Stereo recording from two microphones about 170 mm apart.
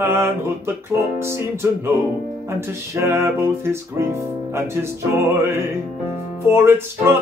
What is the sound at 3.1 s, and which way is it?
Music, 15° right (ahead or behind).